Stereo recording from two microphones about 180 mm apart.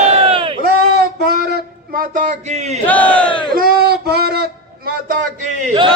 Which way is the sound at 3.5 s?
55° right (ahead or behind).